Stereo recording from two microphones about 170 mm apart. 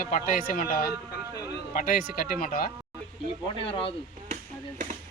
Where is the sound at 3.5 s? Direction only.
30° left (ahead or behind).